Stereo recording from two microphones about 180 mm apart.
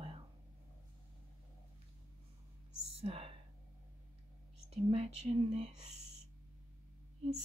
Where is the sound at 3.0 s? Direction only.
30° right (ahead or behind).